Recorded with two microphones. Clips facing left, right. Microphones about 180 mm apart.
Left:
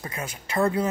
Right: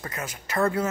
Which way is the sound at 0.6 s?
15° left (ahead or behind).